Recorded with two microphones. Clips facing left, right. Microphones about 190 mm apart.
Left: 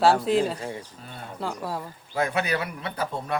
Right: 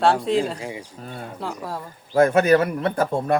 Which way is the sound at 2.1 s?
45° right (ahead or behind).